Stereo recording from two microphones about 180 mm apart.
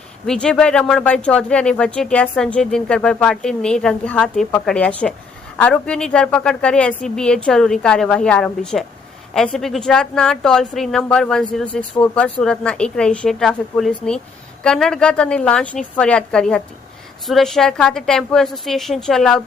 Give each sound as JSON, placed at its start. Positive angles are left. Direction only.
{"t": 0.3, "sound": "speech", "side_deg": 5}